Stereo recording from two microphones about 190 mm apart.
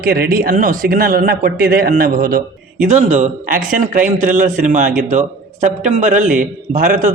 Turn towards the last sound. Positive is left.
turn(degrees=-45)  # may be behind; listen again after turning